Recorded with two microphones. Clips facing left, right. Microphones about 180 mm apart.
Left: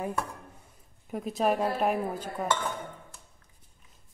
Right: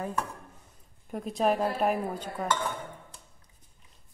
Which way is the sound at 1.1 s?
Centre (ahead or behind).